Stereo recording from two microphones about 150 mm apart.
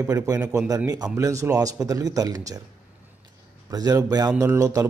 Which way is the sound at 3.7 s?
25° right (ahead or behind).